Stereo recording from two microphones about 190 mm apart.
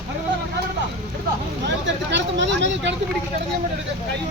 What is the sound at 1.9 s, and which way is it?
Speech, 70° right (ahead or behind).